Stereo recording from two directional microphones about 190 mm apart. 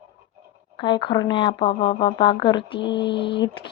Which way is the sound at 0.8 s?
25° left (ahead or behind).